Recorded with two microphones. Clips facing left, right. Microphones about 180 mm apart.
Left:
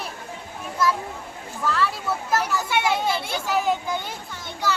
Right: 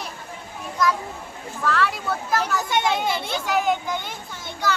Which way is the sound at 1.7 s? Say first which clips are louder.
Right 1 dB; centre (ahead or behind).